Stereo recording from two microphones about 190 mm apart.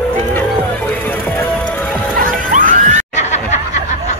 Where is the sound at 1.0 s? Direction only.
5° left (ahead or behind).